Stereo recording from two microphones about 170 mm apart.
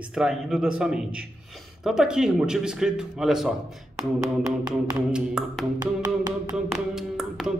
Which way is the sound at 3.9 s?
20° right (ahead or behind).